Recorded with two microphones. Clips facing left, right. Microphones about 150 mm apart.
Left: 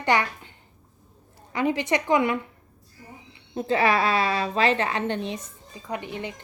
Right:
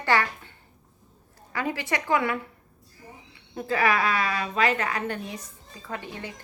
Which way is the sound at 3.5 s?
25° left (ahead or behind).